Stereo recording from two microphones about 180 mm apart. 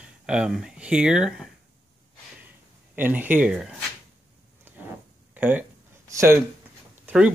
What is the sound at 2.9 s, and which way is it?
Speech, 10° right (ahead or behind).